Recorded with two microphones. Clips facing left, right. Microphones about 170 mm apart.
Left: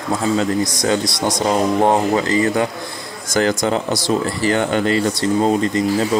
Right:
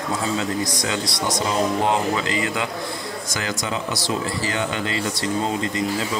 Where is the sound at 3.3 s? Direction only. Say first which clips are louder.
Left 11 dB; 50° left (ahead or behind).